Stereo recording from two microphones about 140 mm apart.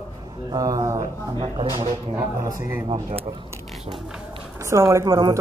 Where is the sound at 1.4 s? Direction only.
40° right (ahead or behind).